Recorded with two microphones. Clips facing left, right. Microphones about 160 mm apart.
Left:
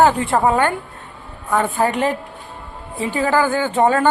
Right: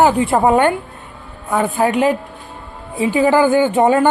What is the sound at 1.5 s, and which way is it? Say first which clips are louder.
A woman's voice: right 2 dB; 10° right (ahead or behind).